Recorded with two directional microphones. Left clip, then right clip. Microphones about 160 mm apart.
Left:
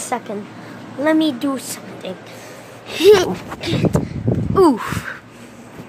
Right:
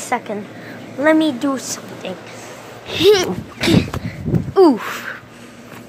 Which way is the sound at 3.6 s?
40° right (ahead or behind).